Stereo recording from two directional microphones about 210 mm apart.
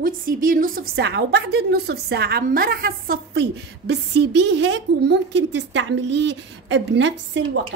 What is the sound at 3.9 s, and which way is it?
A woman's voice, 55° right (ahead or behind).